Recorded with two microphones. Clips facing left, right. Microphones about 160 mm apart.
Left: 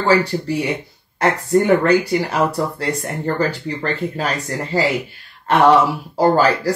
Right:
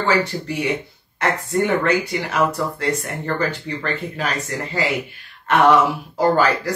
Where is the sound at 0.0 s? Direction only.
35° left (ahead or behind).